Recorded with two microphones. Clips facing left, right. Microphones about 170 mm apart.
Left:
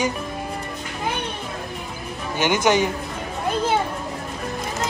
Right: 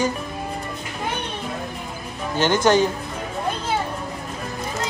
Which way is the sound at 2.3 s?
15° left (ahead or behind).